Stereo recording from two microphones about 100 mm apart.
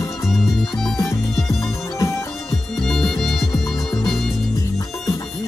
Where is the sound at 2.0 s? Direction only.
30° left (ahead or behind).